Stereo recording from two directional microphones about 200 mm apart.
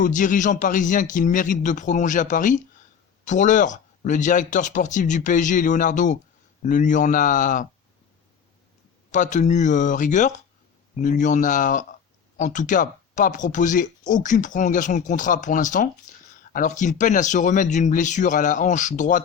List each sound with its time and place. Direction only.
0.0 s speech: 40° left (ahead or behind)
9.1 s speech: 40° left (ahead or behind)